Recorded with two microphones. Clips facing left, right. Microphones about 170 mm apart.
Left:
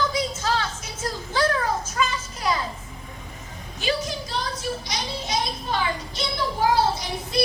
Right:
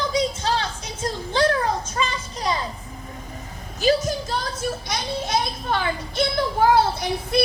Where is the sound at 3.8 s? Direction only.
40° right (ahead or behind).